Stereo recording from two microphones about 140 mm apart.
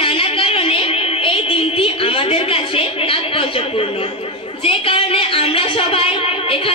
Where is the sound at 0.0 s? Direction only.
40° left (ahead or behind).